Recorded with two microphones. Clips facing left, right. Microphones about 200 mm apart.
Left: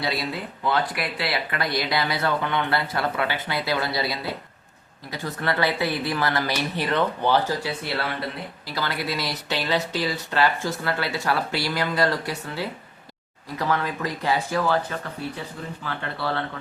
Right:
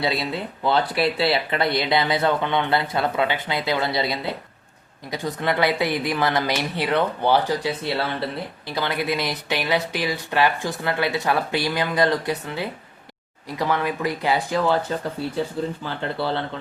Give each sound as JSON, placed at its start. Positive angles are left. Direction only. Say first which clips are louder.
{"t": 0.0, "sound": "speech", "louder": "right 3 dB", "side_deg": -25}